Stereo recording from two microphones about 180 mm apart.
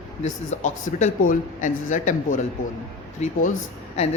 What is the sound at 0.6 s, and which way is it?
Speech, 40° left (ahead or behind).